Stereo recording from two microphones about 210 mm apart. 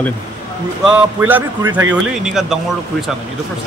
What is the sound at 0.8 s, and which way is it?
A man's voice, 5° right (ahead or behind).